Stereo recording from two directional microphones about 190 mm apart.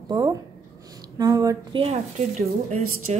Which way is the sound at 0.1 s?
20° right (ahead or behind).